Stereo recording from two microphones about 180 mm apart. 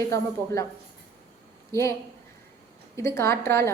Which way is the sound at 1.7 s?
15° left (ahead or behind).